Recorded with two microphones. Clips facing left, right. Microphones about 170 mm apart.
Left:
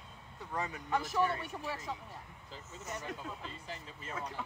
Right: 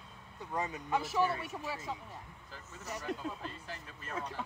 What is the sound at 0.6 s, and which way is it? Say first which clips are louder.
Speech: right 2 dB; 20° right (ahead or behind).